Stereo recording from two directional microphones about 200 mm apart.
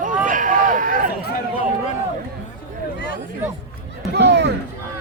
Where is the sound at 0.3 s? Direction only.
40° right (ahead or behind).